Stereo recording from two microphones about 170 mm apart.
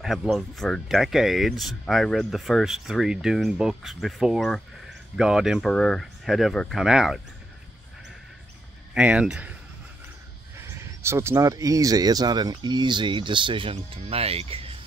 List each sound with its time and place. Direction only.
0.0 s speech: centre (ahead or behind)
8.9 s speech: 5° right (ahead or behind)
11.0 s speech: 15° right (ahead or behind); by 14.8 s 35° right (ahead or behind)